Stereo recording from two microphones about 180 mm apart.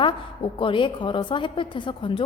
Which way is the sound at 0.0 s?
30° left (ahead or behind).